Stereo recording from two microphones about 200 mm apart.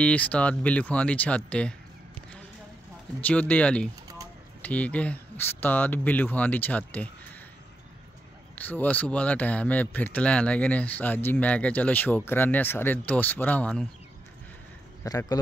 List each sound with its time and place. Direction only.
0.0 s speech: 5° left (ahead or behind)
3.2 s speech: 10° left (ahead or behind)
8.5 s speech: 10° left (ahead or behind)
15.0 s speech: 20° left (ahead or behind)